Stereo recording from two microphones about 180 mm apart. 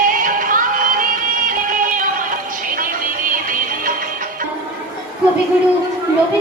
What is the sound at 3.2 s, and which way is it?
Music, 50° right (ahead or behind).